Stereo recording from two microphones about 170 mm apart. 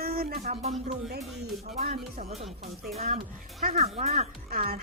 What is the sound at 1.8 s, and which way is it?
Music, 40° right (ahead or behind).